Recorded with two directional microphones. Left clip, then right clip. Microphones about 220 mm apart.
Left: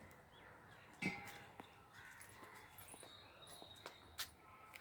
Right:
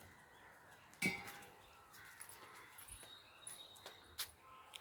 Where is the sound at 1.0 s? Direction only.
30° right (ahead or behind).